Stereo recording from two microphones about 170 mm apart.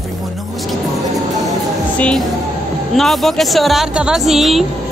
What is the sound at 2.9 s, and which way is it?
Speech, centre (ahead or behind).